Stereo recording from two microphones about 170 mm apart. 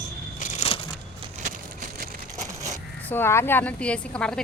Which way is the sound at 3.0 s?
10° left (ahead or behind).